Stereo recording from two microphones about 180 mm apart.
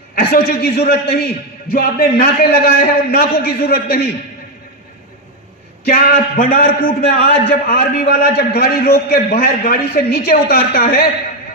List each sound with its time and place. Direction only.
0.1 s a man's voice: 60° left (ahead or behind)
5.9 s a man's voice: 55° left (ahead or behind)